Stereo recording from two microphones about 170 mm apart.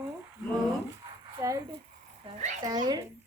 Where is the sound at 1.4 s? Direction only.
20° right (ahead or behind).